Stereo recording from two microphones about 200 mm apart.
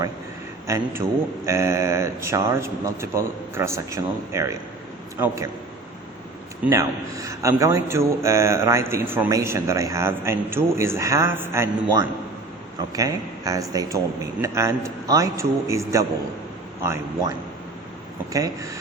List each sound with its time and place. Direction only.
0.7 s a man's voice: 15° right (ahead or behind)
6.7 s a man's voice: 15° right (ahead or behind)